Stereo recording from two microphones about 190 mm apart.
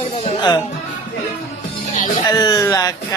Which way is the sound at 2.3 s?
20° left (ahead or behind).